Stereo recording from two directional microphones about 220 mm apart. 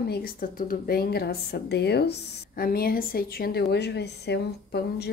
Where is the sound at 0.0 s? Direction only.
45° left (ahead or behind).